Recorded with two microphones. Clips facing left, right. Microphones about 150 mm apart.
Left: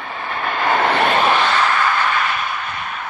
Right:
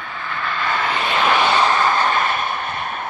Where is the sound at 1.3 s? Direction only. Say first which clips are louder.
Right 1 dB; 15° right (ahead or behind); by 3.0 s 45° right (ahead or behind).